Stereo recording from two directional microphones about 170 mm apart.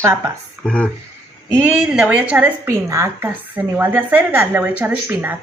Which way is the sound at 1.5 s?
5° right (ahead or behind).